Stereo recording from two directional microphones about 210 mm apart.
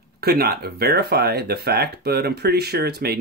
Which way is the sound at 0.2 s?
50° right (ahead or behind).